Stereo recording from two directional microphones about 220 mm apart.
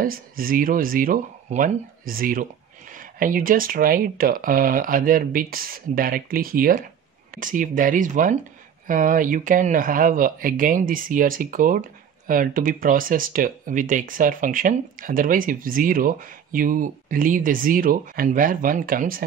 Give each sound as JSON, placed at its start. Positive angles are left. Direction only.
{"t": 0.0, "sound": "speech", "side_deg": -40}